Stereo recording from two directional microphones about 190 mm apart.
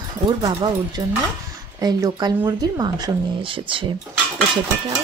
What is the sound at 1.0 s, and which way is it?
Speech, 20° right (ahead or behind).